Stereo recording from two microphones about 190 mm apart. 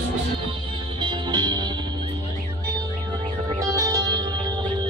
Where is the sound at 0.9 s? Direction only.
25° right (ahead or behind).